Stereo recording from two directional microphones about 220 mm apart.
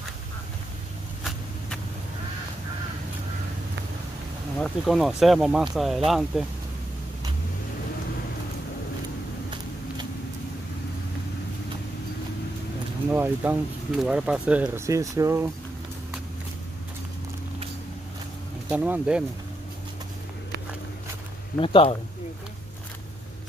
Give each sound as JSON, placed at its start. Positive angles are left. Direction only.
{"t": 4.6, "sound": "speech", "side_deg": 0}
{"t": 13.1, "sound": "speech", "side_deg": -10}
{"t": 18.7, "sound": "speech", "side_deg": -5}
{"t": 21.5, "sound": "speech", "side_deg": 25}